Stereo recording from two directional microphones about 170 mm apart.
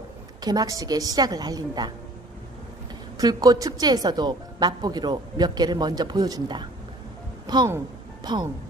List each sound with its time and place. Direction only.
0.4 s a woman's voice: 25° right (ahead or behind)
3.2 s a woman's voice: 25° right (ahead or behind)